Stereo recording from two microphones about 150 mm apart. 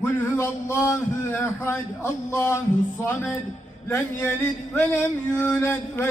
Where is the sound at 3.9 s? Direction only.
15° left (ahead or behind).